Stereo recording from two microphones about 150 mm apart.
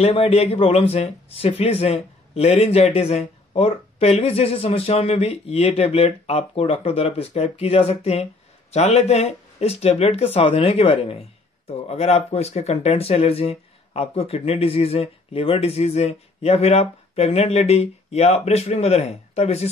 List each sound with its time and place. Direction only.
0.0 s speech: 45° left (ahead or behind)